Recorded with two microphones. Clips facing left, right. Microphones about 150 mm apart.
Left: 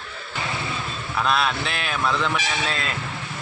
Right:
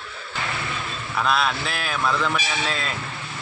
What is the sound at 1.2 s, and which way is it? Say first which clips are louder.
Speech: even; centre (ahead or behind).